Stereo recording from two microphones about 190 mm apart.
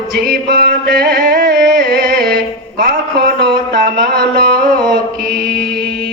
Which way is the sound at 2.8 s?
55° right (ahead or behind).